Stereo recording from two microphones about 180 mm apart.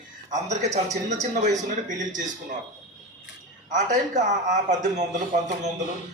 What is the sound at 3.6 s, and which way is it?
A man's voice, 45° right (ahead or behind).